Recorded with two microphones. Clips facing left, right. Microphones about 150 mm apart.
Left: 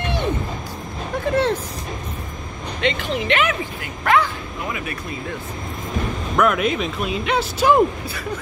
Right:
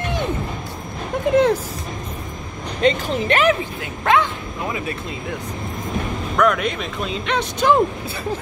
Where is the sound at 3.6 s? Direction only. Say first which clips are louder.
Right 1 dB; 20° right (ahead or behind).